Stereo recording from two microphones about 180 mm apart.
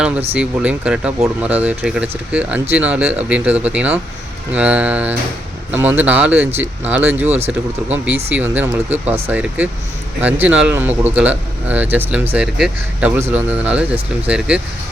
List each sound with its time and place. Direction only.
0.3 s speech: 5° right (ahead or behind)
7.3 s speech: 35° right (ahead or behind)
7.9 s speech: 10° right (ahead or behind)